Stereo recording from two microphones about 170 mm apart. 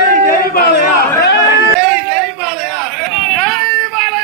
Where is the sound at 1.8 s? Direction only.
Centre (ahead or behind).